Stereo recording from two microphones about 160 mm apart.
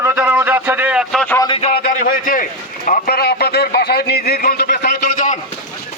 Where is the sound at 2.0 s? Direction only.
60° left (ahead or behind).